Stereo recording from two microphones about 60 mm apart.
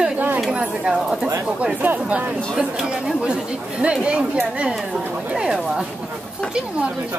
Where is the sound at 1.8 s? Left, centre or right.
Right.